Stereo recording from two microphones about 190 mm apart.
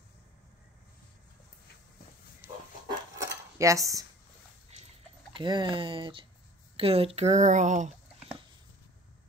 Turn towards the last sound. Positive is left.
turn(degrees=-40)  # may be behind; listen again after turning